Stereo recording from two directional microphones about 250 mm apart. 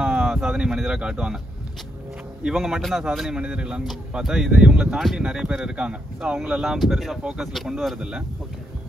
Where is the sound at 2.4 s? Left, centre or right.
Centre.